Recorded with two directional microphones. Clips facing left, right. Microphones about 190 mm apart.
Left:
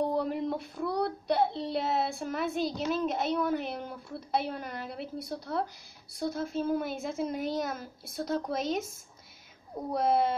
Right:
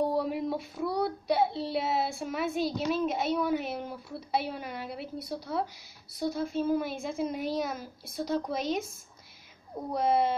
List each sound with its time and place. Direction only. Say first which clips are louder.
0.0 s child singing: right 1 dB; 5° right (ahead or behind)
6.1 s a woman's voice: right 1 dB; centre (ahead or behind)